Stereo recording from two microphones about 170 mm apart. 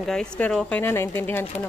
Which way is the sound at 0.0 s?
5° left (ahead or behind).